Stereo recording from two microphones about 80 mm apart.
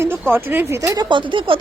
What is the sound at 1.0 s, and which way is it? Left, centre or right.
Speech, right.